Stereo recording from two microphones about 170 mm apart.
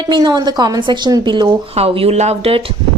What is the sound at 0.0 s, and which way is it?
A woman's voice, 25° right (ahead or behind).